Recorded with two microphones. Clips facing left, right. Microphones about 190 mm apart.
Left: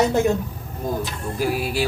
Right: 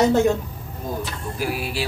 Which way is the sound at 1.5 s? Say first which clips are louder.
Left 4 dB; 45° left (ahead or behind).